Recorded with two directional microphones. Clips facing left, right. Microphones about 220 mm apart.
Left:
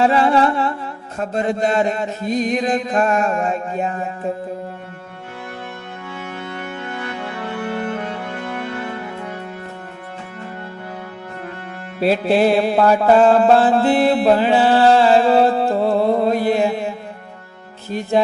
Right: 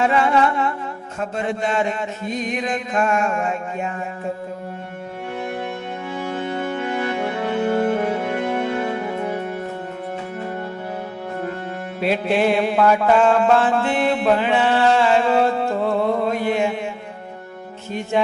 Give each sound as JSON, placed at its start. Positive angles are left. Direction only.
{"t": 0.0, "sound": "chant", "side_deg": 35}
{"t": 6.3, "sound": "music", "side_deg": -20}
{"t": 11.9, "sound": "music", "side_deg": 35}